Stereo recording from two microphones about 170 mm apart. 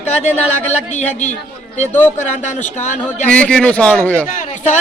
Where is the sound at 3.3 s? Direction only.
5° left (ahead or behind).